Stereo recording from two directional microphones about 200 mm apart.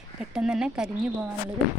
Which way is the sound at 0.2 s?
5° right (ahead or behind).